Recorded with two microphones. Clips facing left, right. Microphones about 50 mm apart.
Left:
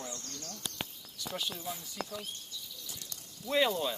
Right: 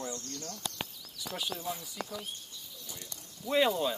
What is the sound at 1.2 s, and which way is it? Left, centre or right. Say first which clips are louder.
Speech: right 1 dB; centre.